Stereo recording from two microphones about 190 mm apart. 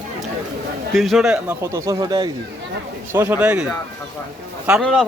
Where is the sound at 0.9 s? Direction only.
Centre (ahead or behind).